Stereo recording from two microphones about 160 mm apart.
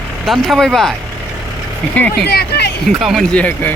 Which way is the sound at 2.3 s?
85° left.